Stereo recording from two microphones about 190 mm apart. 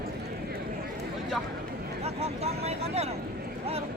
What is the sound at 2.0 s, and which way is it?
Vehicle, 35° right (ahead or behind).